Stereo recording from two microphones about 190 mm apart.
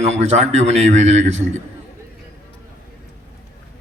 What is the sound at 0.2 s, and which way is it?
A man's voice, 35° right (ahead or behind).